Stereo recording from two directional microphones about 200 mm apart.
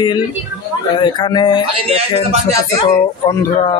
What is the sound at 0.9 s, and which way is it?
Speech, 25° left (ahead or behind).